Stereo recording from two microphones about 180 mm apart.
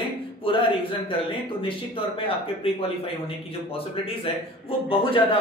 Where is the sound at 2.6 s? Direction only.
30° left (ahead or behind).